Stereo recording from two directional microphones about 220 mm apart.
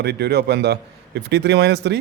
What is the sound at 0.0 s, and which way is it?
A man's voice, 50° right (ahead or behind).